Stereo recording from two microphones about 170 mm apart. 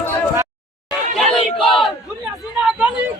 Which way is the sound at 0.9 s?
Centre (ahead or behind).